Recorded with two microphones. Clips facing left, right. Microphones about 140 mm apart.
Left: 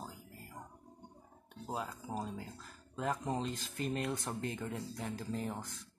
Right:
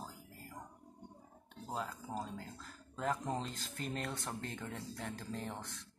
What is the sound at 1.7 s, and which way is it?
Speech, 20° left (ahead or behind).